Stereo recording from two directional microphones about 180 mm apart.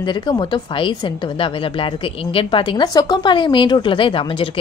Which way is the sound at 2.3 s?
25° left (ahead or behind).